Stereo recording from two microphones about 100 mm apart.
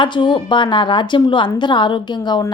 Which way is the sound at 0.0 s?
50° left (ahead or behind).